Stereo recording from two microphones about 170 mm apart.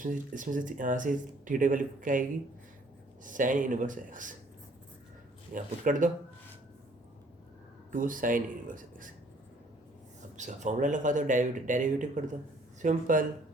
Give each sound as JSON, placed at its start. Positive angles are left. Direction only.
{"t": 0.0, "sound": "speech", "side_deg": -50}
{"t": 3.2, "sound": "speech", "side_deg": -50}
{"t": 5.5, "sound": "speech", "side_deg": -50}
{"t": 7.9, "sound": "speech", "side_deg": -50}
{"t": 10.3, "sound": "speech", "side_deg": -45}